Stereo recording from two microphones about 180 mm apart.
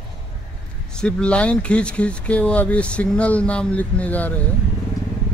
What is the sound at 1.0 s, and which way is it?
Speech, 5° left (ahead or behind).